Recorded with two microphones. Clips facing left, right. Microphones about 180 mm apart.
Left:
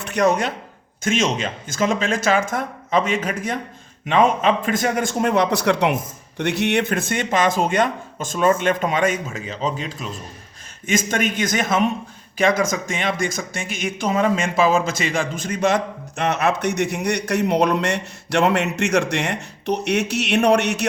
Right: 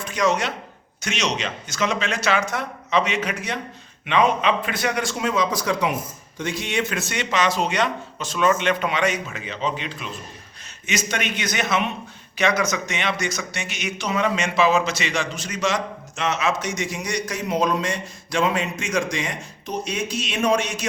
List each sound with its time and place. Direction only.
0.1 s a man's voice: 60° left (ahead or behind)